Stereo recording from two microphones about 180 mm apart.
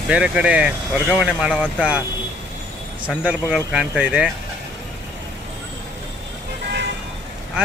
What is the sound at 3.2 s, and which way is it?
Speech, 5° right (ahead or behind).